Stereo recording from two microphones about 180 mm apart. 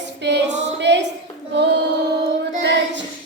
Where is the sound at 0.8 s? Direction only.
75° right (ahead or behind).